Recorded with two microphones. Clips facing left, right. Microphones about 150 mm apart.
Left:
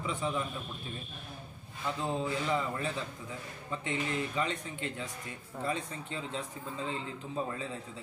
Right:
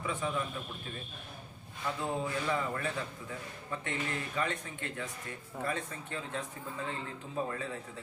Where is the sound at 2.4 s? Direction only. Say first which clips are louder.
Left 1 dB; 20° left (ahead or behind).